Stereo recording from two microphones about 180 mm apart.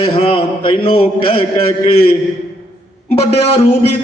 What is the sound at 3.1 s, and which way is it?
Speech, 35° left (ahead or behind).